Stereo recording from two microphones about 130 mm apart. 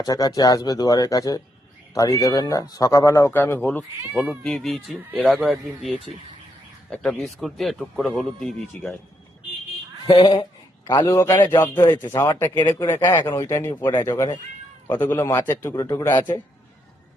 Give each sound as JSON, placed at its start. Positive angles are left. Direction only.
{"t": 0.0, "sound": "speech", "side_deg": 30}
{"t": 4.1, "sound": "speech", "side_deg": 0}
{"t": 4.9, "sound": "speech", "side_deg": -10}
{"t": 6.9, "sound": "speech", "side_deg": 5}
{"t": 10.1, "sound": "a man's voice", "side_deg": 35}
{"t": 11.1, "sound": "speech", "side_deg": 20}